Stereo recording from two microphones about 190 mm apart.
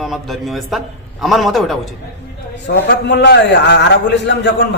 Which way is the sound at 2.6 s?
65° left (ahead or behind).